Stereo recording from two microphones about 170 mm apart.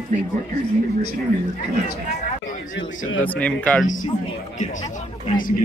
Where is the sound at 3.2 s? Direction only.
10° left (ahead or behind).